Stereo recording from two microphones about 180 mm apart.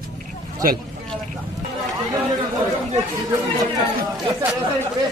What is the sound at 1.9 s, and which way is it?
Speech, 20° right (ahead or behind).